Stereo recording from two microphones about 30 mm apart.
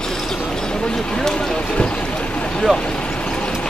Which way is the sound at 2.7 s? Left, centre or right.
Right.